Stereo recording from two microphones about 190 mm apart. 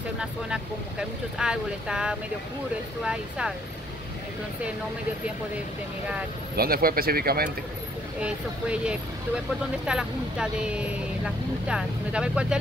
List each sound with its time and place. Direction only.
0.2 s speech: 5° right (ahead or behind)
6.5 s speech: 50° right (ahead or behind)
8.2 s speech: 5° right (ahead or behind)